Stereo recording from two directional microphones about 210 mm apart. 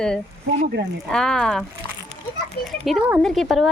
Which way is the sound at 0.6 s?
55° right (ahead or behind).